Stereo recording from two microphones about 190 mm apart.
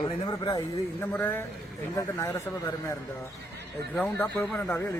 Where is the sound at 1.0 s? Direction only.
10° left (ahead or behind).